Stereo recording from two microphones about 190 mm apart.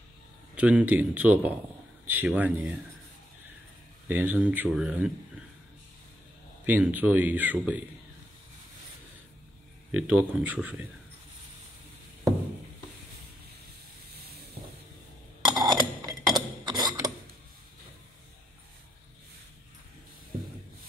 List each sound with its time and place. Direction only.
0.6 s a man's voice: 5° right (ahead or behind)
4.1 s speech: 10° right (ahead or behind)
6.6 s speech: 10° right (ahead or behind)
9.8 s speech: 5° right (ahead or behind)
15.4 s a sound: 20° right (ahead or behind)